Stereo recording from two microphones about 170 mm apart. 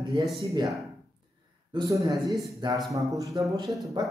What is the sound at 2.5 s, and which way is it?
Speech, 25° right (ahead or behind).